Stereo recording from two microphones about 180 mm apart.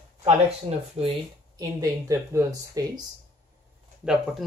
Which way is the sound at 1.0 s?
35° right (ahead or behind).